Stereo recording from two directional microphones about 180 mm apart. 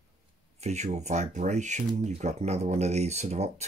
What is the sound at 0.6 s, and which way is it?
Speech, 40° right (ahead or behind).